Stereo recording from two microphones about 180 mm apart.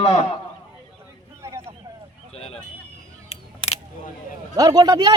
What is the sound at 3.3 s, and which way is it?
Single-lens reflex camera, 35° left (ahead or behind).